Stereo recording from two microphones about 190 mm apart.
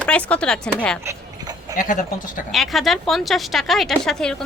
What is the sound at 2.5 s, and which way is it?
Speech, centre (ahead or behind).